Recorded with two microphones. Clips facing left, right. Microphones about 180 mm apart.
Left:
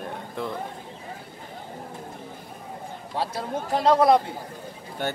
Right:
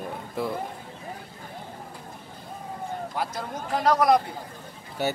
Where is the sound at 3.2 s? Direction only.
30° left (ahead or behind).